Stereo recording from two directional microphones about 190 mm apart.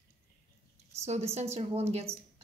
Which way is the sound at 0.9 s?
35° right (ahead or behind).